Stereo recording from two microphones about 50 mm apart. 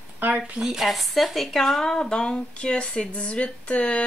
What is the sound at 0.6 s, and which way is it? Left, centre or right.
Speech, centre.